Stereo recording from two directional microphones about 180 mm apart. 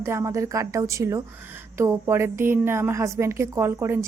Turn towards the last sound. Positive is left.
turn(degrees=-15)  # may be behind; listen again after turning